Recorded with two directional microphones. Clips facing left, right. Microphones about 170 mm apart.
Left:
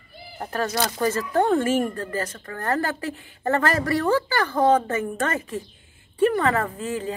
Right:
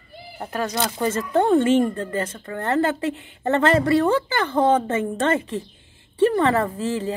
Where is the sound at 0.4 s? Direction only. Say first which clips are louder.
Even; 15° right (ahead or behind).